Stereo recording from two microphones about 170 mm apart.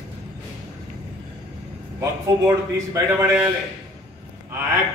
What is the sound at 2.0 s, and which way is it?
A man's voice, 15° right (ahead or behind).